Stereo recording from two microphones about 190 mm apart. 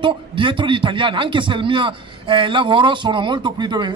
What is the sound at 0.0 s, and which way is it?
A man's voice, 25° right (ahead or behind).